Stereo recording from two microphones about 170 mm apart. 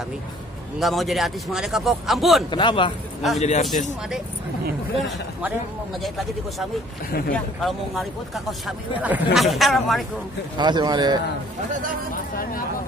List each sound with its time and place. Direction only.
0.7 s speech: centre (ahead or behind)
2.5 s speech: 30° left (ahead or behind)
3.3 s speech: 40° left (ahead or behind)
6.0 s speech: centre (ahead or behind)
7.1 s speech: 60° left (ahead or behind)
7.3 s speech: centre (ahead or behind)
10.6 s speech: 25° right (ahead or behind)